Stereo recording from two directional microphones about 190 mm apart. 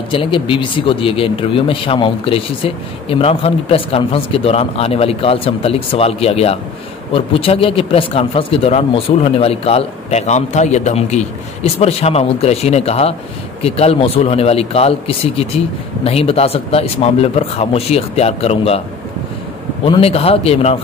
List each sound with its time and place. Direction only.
0.1 s speech: 25° left (ahead or behind)
19.8 s speech: 30° left (ahead or behind)